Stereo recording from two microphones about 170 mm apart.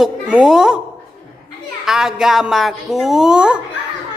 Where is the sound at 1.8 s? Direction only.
5° right (ahead or behind).